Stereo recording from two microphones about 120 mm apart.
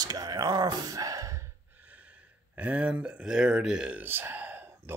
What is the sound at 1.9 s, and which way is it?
Speech, 10° right (ahead or behind).